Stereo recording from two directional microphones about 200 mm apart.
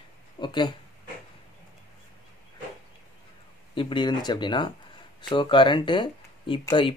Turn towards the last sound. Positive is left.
turn(degrees=25)  # may be behind; listen again after turning